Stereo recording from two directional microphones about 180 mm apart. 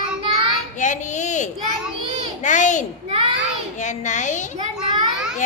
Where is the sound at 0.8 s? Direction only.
45° left (ahead or behind).